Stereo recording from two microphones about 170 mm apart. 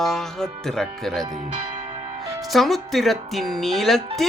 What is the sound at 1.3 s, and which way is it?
Speech, 40° right (ahead or behind).